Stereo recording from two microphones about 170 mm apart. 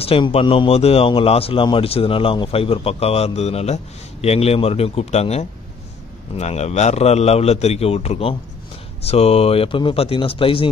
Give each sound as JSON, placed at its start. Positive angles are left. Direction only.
{"t": 0.0, "sound": "speech", "side_deg": 35}